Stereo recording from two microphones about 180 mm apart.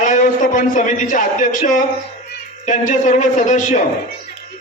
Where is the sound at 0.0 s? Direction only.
45° left (ahead or behind).